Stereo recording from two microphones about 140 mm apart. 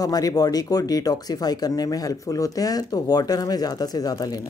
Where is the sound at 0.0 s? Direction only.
25° left (ahead or behind).